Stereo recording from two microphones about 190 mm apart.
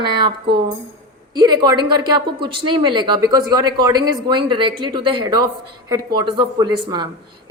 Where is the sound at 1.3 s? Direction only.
20° right (ahead or behind).